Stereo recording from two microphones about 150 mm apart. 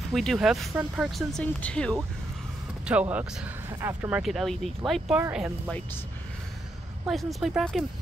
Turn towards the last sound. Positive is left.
turn(degrees=0)  # may be behind; listen again after turning